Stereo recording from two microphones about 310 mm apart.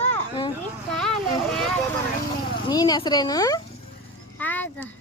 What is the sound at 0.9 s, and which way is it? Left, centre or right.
Vehicle, centre.